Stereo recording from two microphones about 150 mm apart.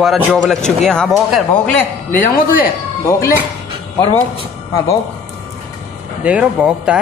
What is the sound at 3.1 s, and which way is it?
Speech, 20° left (ahead or behind).